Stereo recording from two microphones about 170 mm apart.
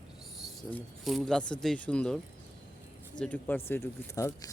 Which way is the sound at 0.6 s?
10° left (ahead or behind).